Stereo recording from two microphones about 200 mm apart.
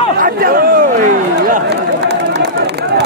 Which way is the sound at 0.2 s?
50° right (ahead or behind).